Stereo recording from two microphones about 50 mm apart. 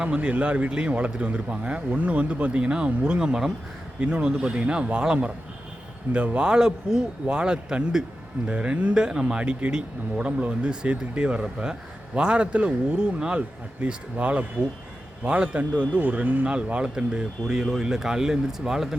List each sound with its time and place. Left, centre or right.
0.0 s a man's voice: right
16.5 s a man's voice: right